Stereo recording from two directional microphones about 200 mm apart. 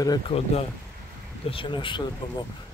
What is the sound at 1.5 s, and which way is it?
Speech, 25° left (ahead or behind).